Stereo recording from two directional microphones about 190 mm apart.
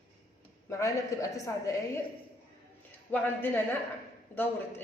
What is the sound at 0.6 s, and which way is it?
Speech, 15° left (ahead or behind).